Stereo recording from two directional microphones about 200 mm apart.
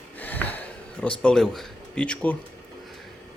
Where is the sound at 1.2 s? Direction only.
Centre (ahead or behind).